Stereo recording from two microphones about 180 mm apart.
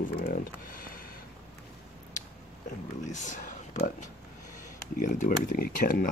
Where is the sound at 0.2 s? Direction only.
55° left (ahead or behind).